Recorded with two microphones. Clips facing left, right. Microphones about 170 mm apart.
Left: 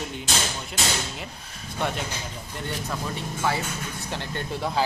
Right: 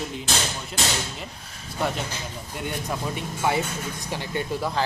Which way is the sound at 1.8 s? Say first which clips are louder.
Right 1 dB; centre (ahead or behind).